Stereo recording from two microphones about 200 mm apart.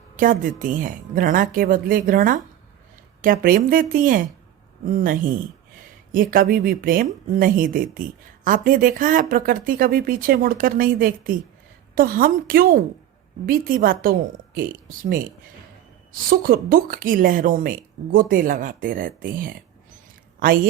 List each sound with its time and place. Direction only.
0.2 s a woman's voice: 40° right (ahead or behind)
16.3 s a woman's voice: 45° right (ahead or behind)